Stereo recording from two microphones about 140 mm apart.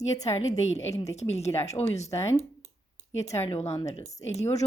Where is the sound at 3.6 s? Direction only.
25° left (ahead or behind).